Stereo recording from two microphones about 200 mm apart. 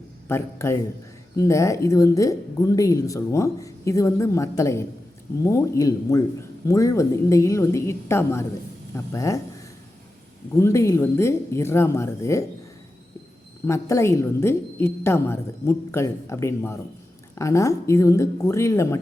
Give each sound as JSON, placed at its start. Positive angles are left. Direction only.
{"t": 0.3, "sound": "speech", "side_deg": 15}
{"t": 10.5, "sound": "speech", "side_deg": 15}
{"t": 13.7, "sound": "speech", "side_deg": 15}